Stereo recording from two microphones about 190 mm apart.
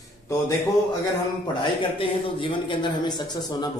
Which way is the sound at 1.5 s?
25° left (ahead or behind).